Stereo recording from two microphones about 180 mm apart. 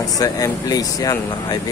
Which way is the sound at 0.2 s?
20° left (ahead or behind).